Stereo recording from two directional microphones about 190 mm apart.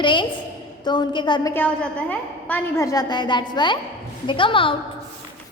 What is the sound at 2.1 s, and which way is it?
A woman's voice, 10° left (ahead or behind).